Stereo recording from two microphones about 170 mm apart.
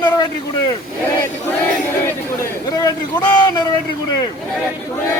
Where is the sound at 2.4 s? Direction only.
25° left (ahead or behind).